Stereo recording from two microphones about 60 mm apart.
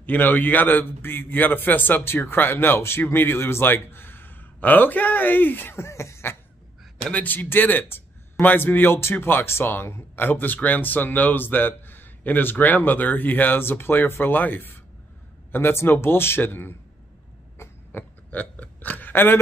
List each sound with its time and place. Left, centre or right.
0.0 s a man's voice: left
7.1 s a man's voice: left
10.2 s a man's voice: left
17.9 s burping: left